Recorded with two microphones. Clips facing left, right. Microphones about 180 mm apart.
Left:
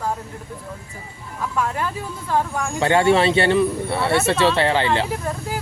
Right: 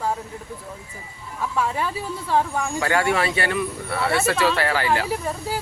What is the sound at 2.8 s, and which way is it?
A man's voice, 25° left (ahead or behind).